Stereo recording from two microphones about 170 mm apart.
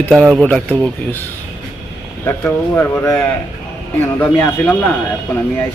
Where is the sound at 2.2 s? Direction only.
15° left (ahead or behind).